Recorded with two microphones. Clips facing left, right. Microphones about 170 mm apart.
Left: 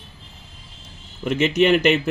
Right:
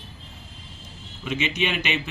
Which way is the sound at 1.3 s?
50° left (ahead or behind).